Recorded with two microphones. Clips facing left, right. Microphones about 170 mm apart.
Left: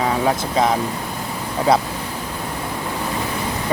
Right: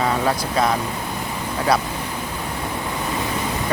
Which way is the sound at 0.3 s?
20° left (ahead or behind).